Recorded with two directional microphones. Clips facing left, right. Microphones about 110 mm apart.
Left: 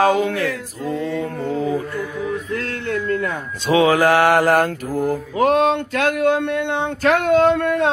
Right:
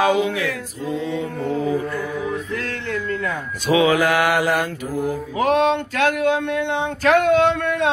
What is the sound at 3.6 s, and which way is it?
Mantra, 30° left (ahead or behind).